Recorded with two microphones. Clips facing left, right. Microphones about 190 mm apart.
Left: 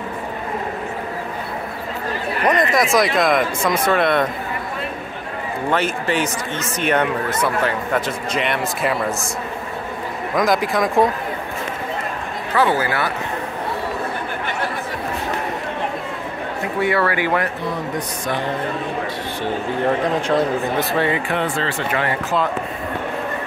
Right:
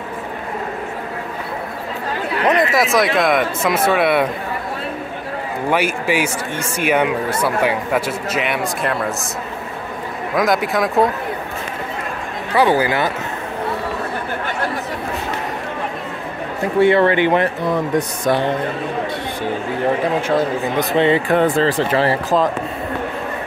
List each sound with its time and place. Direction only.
2.5 s speech: 5° right (ahead or behind)
5.7 s speech: 10° right (ahead or behind)
10.3 s speech: centre (ahead or behind)
12.5 s speech: 15° right (ahead or behind)
16.8 s speech: 25° right (ahead or behind)
20.2 s speech: 5° right (ahead or behind)
20.9 s speech: 20° right (ahead or behind)
21.3 s speech: 40° right (ahead or behind)